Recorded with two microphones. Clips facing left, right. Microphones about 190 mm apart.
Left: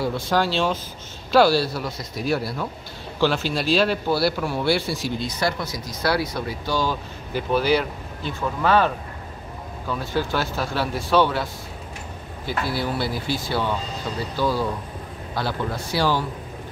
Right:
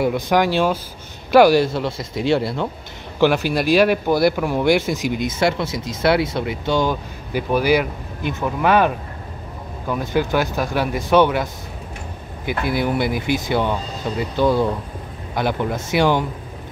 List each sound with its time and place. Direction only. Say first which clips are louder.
0.0 s speech: right 5 dB; 15° right (ahead or behind)
3.2 s speech: right 5 dB; 15° right (ahead or behind)
12.4 s speech: right 5 dB; 15° right (ahead or behind)